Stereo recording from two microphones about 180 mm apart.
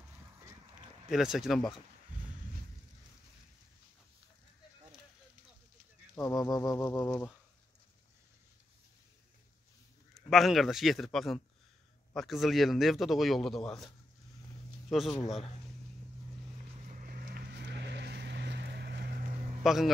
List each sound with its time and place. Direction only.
1.1 s a man's voice: centre (ahead or behind)
6.1 s a sound: 20° left (ahead or behind)
10.1 s a man's voice: centre (ahead or behind)
16.9 s vehicle: 55° right (ahead or behind)
19.6 s a man's voice: centre (ahead or behind)